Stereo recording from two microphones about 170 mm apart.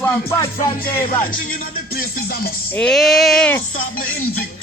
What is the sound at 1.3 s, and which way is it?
Music, 60° left (ahead or behind).